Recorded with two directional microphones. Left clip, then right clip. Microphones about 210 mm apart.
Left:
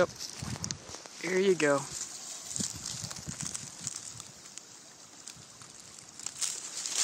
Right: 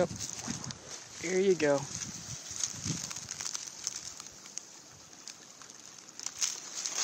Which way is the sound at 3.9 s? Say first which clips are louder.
Right 2 dB; 30° right (ahead or behind).